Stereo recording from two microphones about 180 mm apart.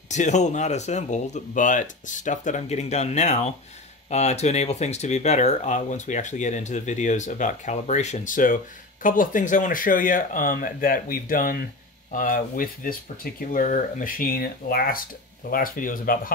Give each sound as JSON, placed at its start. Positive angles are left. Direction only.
{"t": 0.1, "sound": "speech", "side_deg": 40}